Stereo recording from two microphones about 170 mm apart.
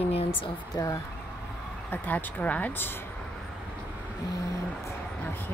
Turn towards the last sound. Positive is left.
turn(degrees=10)  # may be behind; listen again after turning